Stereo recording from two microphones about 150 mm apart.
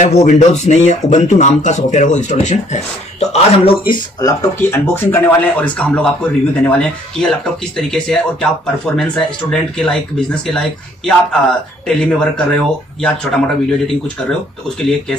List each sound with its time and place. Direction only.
0.0 s speech: 50° left (ahead or behind); by 14.1 s 5° left (ahead or behind)